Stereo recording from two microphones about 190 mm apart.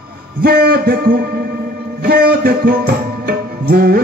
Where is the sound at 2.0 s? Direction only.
55° right (ahead or behind).